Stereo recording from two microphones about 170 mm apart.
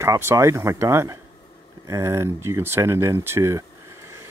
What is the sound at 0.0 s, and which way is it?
Speech, 15° right (ahead or behind).